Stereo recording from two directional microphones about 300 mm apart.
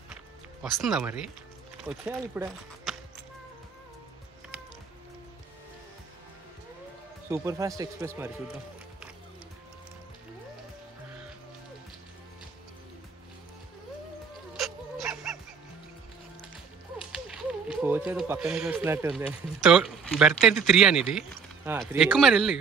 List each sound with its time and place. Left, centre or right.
0.1 s music: centre
1.9 s speech: centre
7.2 s speech: centre
14.6 s music: centre
17.1 s speech: centre